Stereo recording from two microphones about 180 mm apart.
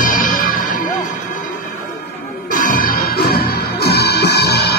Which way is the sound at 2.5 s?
50° left (ahead or behind).